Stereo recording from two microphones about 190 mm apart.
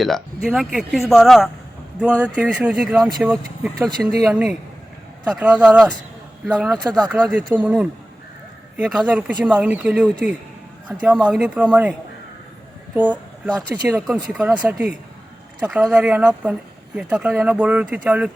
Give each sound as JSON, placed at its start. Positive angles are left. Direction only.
{"t": 0.4, "sound": "speech", "side_deg": 0}
{"t": 6.7, "sound": "speech", "side_deg": -20}
{"t": 7.1, "sound": "speech", "side_deg": -10}
{"t": 11.3, "sound": "speech", "side_deg": -5}
{"t": 12.9, "sound": "a sound", "side_deg": -10}
{"t": 13.7, "sound": "speech", "side_deg": -10}